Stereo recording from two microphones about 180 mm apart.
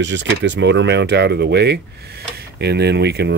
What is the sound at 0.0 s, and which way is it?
Speech, 80° right.